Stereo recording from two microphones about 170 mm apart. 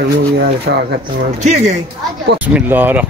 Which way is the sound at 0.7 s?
70° right (ahead or behind).